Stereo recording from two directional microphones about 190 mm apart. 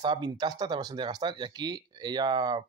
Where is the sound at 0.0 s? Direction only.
25° right (ahead or behind).